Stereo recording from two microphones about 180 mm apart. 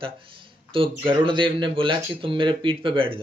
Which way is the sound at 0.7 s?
30° right (ahead or behind).